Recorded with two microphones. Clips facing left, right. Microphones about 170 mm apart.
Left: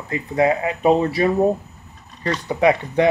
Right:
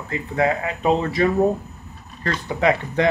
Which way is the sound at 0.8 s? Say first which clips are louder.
Left 2 dB; 15° left (ahead or behind).